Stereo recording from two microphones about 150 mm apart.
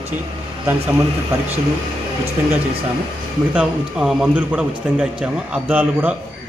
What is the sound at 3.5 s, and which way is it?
A man's voice, 5° right (ahead or behind).